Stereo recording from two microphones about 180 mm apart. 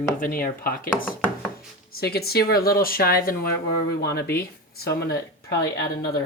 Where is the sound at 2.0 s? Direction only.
60° left (ahead or behind).